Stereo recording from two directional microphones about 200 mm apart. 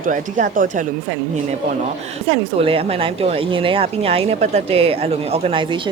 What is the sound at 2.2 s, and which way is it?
A woman's voice, 30° right (ahead or behind).